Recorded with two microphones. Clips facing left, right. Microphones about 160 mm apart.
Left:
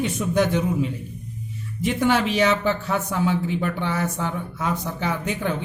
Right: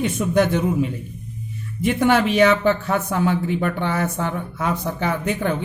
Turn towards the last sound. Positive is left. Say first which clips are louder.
# right 3 dB
turn(degrees=-55)  # may be behind; listen again after turning